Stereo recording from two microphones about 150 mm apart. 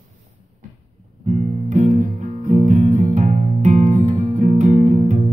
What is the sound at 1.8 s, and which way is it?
Music, 55° right (ahead or behind).